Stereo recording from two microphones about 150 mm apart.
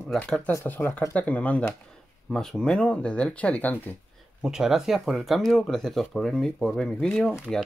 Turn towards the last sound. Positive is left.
turn(degrees=5)  # may be behind; listen again after turning